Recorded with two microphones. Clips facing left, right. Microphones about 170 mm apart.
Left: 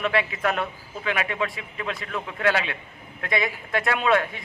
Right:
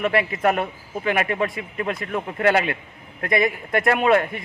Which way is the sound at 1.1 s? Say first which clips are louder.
Right 4 dB; 50° right (ahead or behind).